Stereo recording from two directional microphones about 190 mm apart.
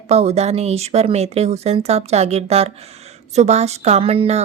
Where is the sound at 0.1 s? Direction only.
35° right (ahead or behind).